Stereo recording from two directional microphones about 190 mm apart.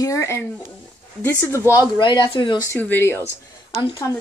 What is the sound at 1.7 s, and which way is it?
Speech, 20° left (ahead or behind).